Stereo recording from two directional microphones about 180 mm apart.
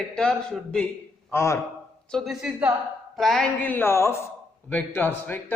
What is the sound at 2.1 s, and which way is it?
A man's voice, centre (ahead or behind).